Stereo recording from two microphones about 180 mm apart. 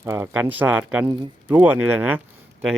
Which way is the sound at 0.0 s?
15° right (ahead or behind).